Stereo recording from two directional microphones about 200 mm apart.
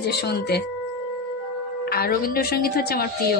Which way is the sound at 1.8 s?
50° left (ahead or behind).